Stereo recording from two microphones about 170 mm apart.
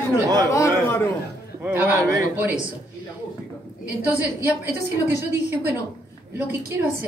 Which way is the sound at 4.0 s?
10° right (ahead or behind).